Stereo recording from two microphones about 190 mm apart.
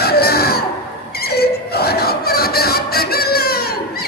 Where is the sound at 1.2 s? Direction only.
55° left (ahead or behind).